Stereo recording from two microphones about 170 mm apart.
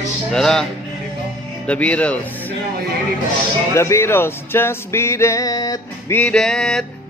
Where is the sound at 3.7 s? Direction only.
15° left (ahead or behind).